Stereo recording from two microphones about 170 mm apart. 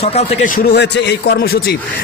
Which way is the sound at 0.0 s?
35° left (ahead or behind).